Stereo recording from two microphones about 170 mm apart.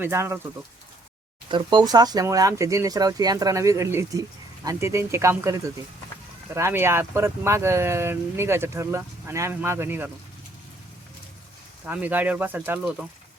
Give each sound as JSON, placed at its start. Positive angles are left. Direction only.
{"t": 0.0, "sound": "speech", "side_deg": -15}
{"t": 1.5, "sound": "speech", "side_deg": -25}
{"t": 11.9, "sound": "speech", "side_deg": -10}